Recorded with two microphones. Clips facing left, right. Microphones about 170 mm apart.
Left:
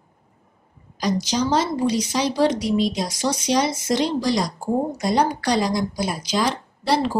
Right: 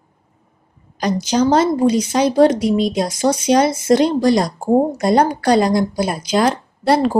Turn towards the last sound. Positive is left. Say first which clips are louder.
# right 6 dB
turn(degrees=-55)  # may be behind; listen again after turning